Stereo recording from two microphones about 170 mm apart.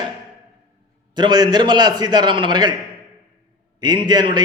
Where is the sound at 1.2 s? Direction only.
25° right (ahead or behind).